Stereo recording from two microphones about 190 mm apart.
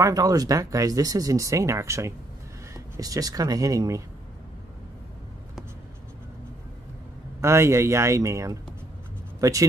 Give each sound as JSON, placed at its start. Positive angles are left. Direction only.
{"t": 0.0, "sound": "speech", "side_deg": -20}
{"t": 7.3, "sound": "speech", "side_deg": -15}